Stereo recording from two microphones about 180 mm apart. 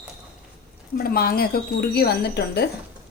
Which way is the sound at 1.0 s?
55° left (ahead or behind).